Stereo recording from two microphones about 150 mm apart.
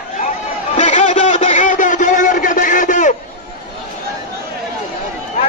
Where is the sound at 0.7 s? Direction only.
50° left (ahead or behind).